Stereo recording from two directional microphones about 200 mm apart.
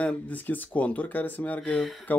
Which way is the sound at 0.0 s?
10° left (ahead or behind).